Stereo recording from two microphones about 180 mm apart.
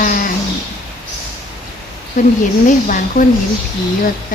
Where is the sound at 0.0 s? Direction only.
55° left (ahead or behind).